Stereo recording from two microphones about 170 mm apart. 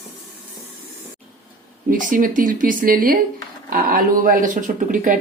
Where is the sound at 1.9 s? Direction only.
55° right (ahead or behind).